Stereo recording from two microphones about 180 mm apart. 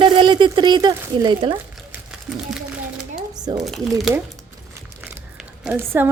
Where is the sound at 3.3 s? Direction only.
20° right (ahead or behind).